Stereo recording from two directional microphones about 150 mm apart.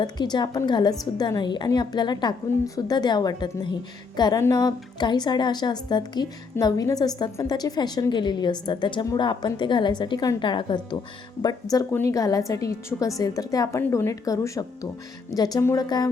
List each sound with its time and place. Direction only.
0.0 s a woman's voice: 30° left (ahead or behind)